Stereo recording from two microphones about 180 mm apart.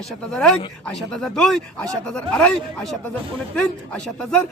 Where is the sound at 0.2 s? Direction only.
5° left (ahead or behind).